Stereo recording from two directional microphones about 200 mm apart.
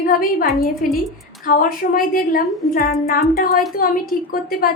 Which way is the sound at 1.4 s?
45° left (ahead or behind).